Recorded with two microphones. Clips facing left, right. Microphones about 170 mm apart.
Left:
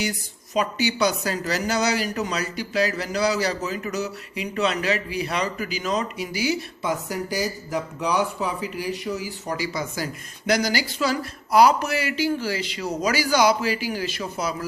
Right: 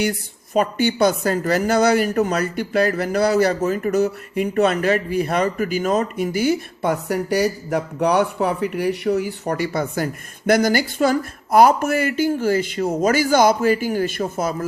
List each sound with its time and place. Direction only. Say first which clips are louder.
0.0 s speech: right 6 dB; 55° right (ahead or behind)